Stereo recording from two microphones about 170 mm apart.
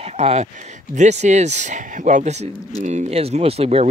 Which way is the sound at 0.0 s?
40° right (ahead or behind).